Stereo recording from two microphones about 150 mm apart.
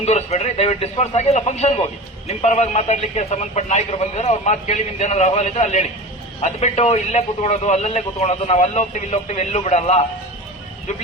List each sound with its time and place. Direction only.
0.0 s a man's voice: 45° left (ahead or behind)